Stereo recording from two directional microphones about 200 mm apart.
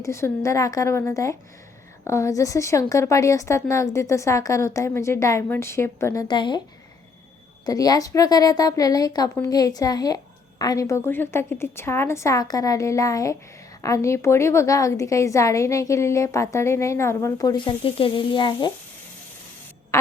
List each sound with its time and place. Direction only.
0.0 s a woman's voice: 15° left (ahead or behind)
7.6 s a woman's voice: 20° left (ahead or behind)
19.9 s a sound: 15° left (ahead or behind)